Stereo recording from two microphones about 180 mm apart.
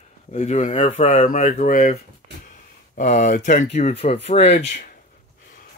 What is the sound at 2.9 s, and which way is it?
Speech, 40° left (ahead or behind).